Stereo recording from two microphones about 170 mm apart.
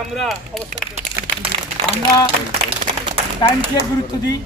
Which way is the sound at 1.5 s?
35° right (ahead or behind).